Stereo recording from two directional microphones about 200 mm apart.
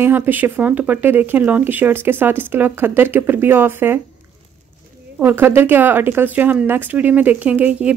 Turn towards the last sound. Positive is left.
turn(degrees=-5)  # may be behind; listen again after turning